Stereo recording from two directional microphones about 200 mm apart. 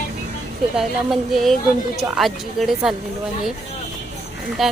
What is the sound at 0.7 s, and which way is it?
Speech, centre (ahead or behind).